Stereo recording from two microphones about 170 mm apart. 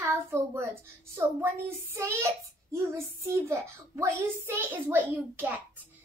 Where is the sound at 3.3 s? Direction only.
15° right (ahead or behind).